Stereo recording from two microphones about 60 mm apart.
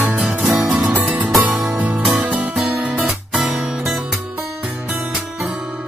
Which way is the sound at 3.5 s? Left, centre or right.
Centre.